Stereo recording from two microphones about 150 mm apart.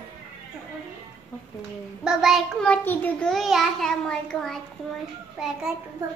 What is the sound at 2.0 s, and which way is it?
A child's voice, 5° right (ahead or behind).